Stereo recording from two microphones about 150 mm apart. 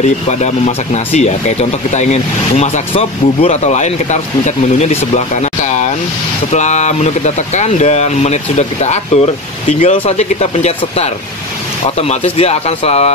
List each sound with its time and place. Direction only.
0.0 s speech: 50° left (ahead or behind)